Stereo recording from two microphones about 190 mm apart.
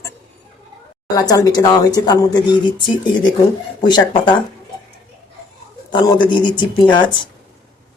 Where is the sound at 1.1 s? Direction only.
20° left (ahead or behind).